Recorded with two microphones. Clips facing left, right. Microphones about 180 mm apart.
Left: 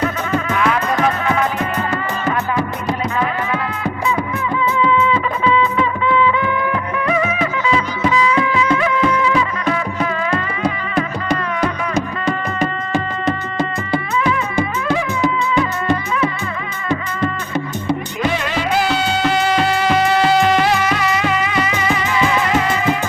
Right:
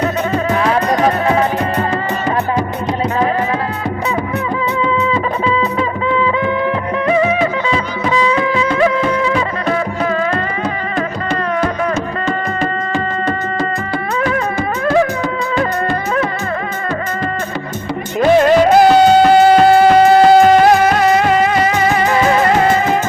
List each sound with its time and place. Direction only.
0.5 s music: 35° right (ahead or behind)
4.8 s music: 35° right (ahead or behind)
13.9 s music: 45° right (ahead or behind)
18.3 s music: 45° right (ahead or behind)